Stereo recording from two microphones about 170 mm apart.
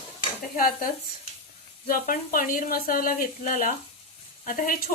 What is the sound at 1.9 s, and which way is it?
Speech, 55° left (ahead or behind).